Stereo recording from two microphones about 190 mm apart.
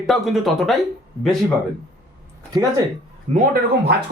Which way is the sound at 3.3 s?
30° right (ahead or behind).